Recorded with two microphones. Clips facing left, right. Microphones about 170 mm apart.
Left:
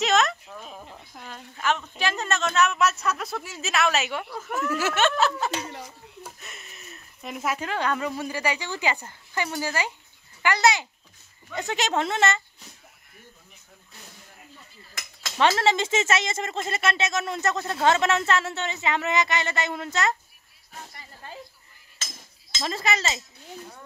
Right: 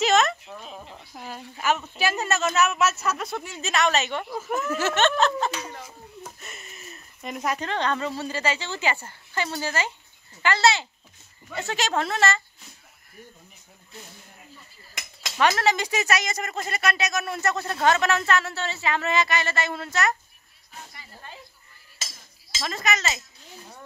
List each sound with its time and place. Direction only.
0.0 s a sound: centre (ahead or behind)
1.1 s a woman's voice: 5° right (ahead or behind)
4.3 s speech: 5° right (ahead or behind)
4.7 s speech: 5° left (ahead or behind)
15.3 s speech: 25° left (ahead or behind)
21.9 s chink: 10° right (ahead or behind)
22.6 s speech: 30° left (ahead or behind)